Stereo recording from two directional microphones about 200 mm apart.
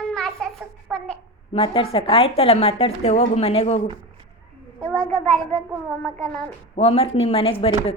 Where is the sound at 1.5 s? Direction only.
25° left (ahead or behind).